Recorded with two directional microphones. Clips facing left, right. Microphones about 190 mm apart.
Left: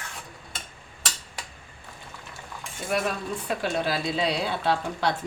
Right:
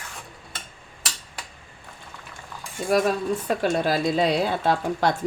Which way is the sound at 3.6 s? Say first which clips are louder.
Right 3 dB; 45° right (ahead or behind).